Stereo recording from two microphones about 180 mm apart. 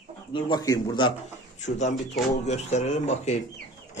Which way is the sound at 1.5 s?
40° left (ahead or behind).